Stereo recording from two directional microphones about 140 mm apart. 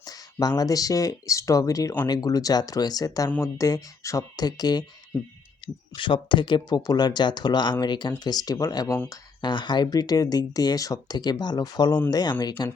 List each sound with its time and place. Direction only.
0.0 s speech: 25° left (ahead or behind)